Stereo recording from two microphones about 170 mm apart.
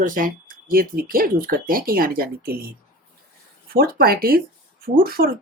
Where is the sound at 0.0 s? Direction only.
55° right (ahead or behind).